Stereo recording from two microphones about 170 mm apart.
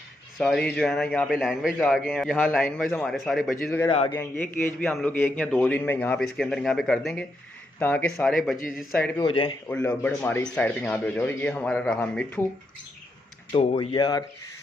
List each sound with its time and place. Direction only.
0.4 s a man's voice: 5° left (ahead or behind)
2.3 s a man's voice: 10° left (ahead or behind)
3.6 s a man's voice: 10° left (ahead or behind)
9.1 s speech: 30° left (ahead or behind)
9.7 s a man's voice: 10° left (ahead or behind)
13.5 s speech: 30° left (ahead or behind)